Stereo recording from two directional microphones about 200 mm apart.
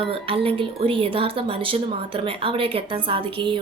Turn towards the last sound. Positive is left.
turn(degrees=-25)  # may be behind; listen again after turning